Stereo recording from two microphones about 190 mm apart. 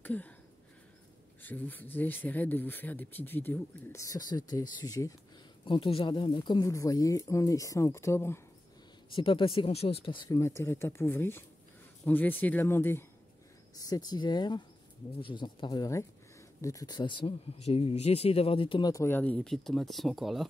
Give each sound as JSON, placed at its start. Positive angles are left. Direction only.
{"t": 0.0, "sound": "a sound", "side_deg": 10}
{"t": 1.4, "sound": "speech", "side_deg": 10}
{"t": 9.1, "sound": "speech", "side_deg": 25}